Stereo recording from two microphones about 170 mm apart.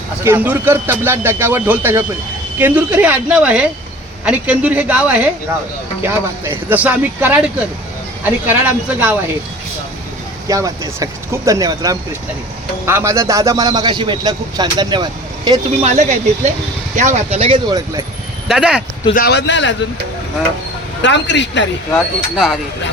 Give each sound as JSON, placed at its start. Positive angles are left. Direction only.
{"t": 0.3, "sound": "speech", "side_deg": -10}
{"t": 10.5, "sound": "a man's voice", "side_deg": -20}
{"t": 15.8, "sound": "speech", "side_deg": -40}
{"t": 18.4, "sound": "speech", "side_deg": -5}
{"t": 19.1, "sound": "speech", "side_deg": 75}
{"t": 21.0, "sound": "speech", "side_deg": 90}
{"t": 21.9, "sound": "speech", "side_deg": 0}